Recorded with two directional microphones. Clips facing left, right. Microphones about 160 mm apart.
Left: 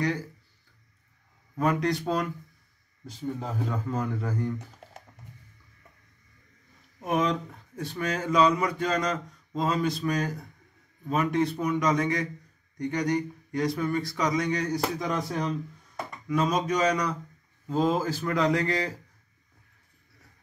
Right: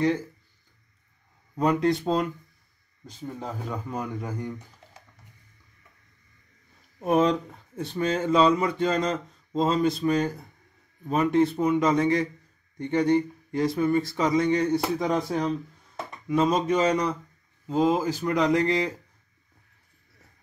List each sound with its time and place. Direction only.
1.6 s speech: 20° right (ahead or behind)
3.9 s speech: 15° right (ahead or behind)
7.0 s speech: 35° right (ahead or behind)
17.6 s speech: 15° right (ahead or behind)